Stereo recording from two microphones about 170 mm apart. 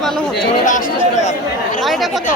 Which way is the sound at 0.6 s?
50° left (ahead or behind).